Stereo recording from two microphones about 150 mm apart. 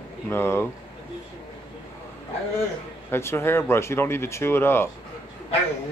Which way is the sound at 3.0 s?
15° left (ahead or behind).